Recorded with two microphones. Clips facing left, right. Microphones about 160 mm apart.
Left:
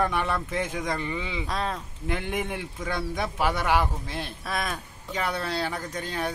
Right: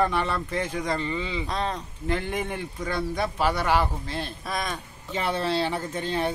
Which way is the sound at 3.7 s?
15° left (ahead or behind).